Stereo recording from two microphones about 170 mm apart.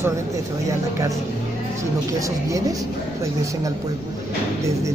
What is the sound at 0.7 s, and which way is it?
Speech, 20° right (ahead or behind).